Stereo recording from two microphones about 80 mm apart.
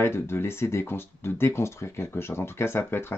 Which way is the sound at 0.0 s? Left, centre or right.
Left.